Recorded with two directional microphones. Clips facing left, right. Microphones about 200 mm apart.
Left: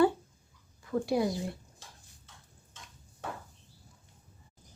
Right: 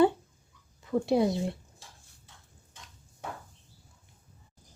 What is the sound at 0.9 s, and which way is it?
Speech, 25° right (ahead or behind).